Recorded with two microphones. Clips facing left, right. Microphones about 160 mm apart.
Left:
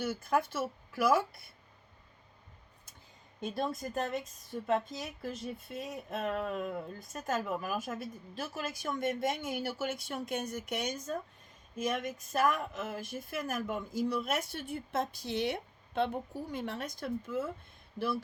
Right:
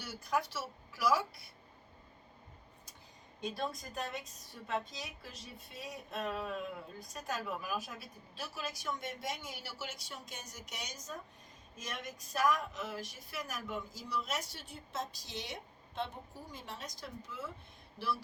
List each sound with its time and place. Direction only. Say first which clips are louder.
0.0 s a woman's voice: left 5 dB; 50° left (ahead or behind)
3.4 s a woman's voice: left 4 dB; 50° left (ahead or behind)